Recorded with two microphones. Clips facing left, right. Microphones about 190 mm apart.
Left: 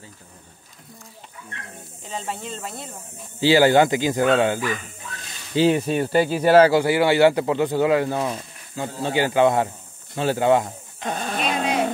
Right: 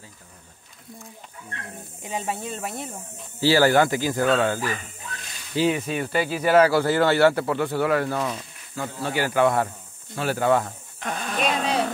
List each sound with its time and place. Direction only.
2.0 s speech: 15° right (ahead or behind)
3.3 s speech: 20° left (ahead or behind)
5.6 s speech: 35° left (ahead or behind)
6.7 s speech: 15° left (ahead or behind)
11.1 s dog: 35° left (ahead or behind)